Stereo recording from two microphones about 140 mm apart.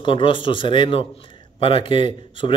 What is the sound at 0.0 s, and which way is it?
A man's voice, 40° left (ahead or behind).